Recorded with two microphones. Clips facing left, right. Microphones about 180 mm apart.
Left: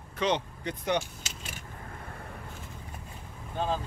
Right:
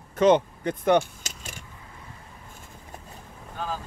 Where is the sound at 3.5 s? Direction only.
25° left (ahead or behind).